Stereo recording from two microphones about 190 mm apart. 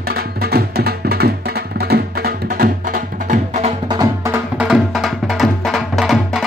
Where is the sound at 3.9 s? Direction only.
15° right (ahead or behind).